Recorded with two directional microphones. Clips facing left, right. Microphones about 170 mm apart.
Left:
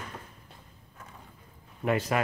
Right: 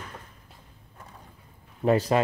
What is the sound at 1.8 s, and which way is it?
Speech, 35° right (ahead or behind).